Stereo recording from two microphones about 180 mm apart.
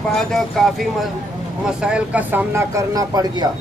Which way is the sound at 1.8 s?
5° right (ahead or behind).